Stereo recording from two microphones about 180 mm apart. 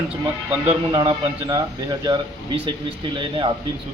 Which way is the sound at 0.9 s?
25° right (ahead or behind).